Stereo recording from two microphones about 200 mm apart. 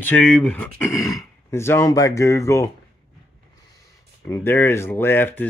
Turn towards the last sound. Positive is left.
turn(degrees=10)  # may be behind; listen again after turning